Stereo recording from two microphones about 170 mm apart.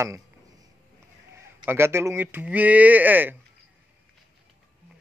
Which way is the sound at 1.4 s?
15° right (ahead or behind).